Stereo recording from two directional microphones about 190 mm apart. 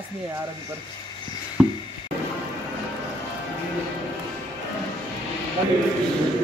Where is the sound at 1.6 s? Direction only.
5° right (ahead or behind).